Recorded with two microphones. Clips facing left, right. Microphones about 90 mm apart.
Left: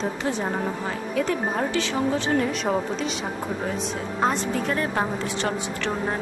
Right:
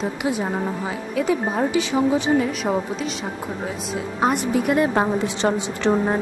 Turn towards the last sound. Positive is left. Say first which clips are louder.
# right 7 dB
turn(degrees=-20)  # may be behind; listen again after turning